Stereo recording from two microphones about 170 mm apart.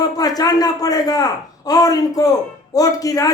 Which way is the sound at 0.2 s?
20° left (ahead or behind).